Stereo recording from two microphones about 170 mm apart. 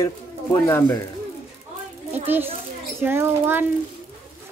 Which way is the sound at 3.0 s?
15° right (ahead or behind).